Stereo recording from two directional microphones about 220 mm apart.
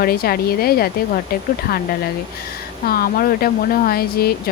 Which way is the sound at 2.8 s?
40° left (ahead or behind).